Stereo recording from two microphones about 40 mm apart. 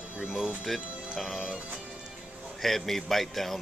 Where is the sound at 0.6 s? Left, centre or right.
Centre.